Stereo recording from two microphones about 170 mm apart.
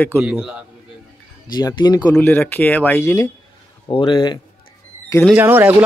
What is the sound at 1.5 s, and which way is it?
Speech, 25° left (ahead or behind).